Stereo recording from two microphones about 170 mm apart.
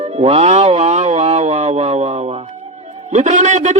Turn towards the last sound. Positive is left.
turn(degrees=-45)  # may be behind; listen again after turning